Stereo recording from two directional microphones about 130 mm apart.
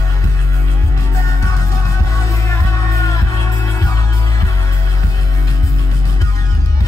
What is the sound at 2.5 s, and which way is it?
Music, 25° left (ahead or behind).